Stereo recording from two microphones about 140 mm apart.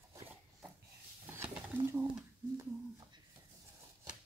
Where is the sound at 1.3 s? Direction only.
15° right (ahead or behind).